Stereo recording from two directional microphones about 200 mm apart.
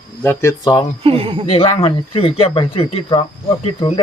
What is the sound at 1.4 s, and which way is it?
Speech, 25° left (ahead or behind).